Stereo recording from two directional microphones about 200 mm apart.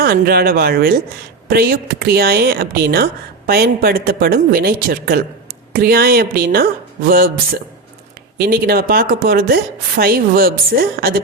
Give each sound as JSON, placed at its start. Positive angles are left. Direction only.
{"t": 0.0, "sound": "speech", "side_deg": -50}